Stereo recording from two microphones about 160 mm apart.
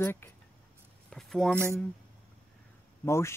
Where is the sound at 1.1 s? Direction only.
5° left (ahead or behind).